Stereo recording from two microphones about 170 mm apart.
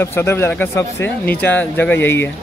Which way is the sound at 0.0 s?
15° left (ahead or behind).